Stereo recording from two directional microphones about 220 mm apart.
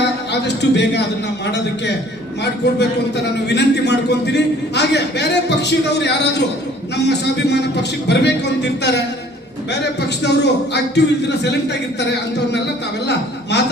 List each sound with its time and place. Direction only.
0.0 s a man's voice: 50° left (ahead or behind)
3.5 s a man's voice: 50° left (ahead or behind)